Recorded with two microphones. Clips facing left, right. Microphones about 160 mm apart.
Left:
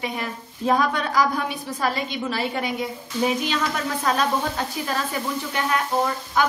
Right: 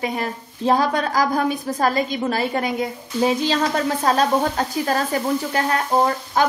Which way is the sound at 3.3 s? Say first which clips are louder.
Right 6 dB; 30° right (ahead or behind).